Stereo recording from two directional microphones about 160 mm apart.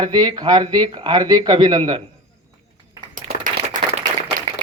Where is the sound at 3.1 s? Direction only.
55° right (ahead or behind).